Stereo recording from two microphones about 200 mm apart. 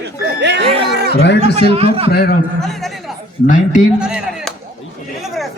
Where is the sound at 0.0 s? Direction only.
55° right (ahead or behind).